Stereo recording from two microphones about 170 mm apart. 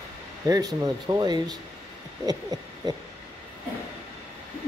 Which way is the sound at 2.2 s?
20° right (ahead or behind).